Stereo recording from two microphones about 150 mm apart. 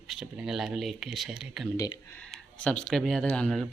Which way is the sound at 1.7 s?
25° left (ahead or behind).